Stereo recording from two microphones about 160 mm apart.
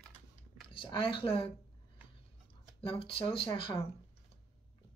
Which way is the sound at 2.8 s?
35° left (ahead or behind).